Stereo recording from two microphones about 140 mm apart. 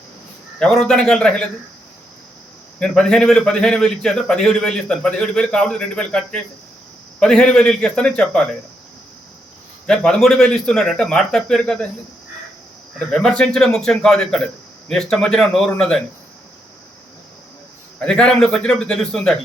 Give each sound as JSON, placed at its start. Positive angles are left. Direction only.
{"t": 0.6, "sound": "a man's voice", "side_deg": 5}
{"t": 2.7, "sound": "a man's voice", "side_deg": 5}
{"t": 9.8, "sound": "a man's voice", "side_deg": 5}
{"t": 13.1, "sound": "a man's voice", "side_deg": 5}
{"t": 18.0, "sound": "a man's voice", "side_deg": 5}